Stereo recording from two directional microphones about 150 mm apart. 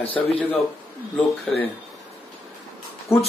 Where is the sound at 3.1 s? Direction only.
20° left (ahead or behind).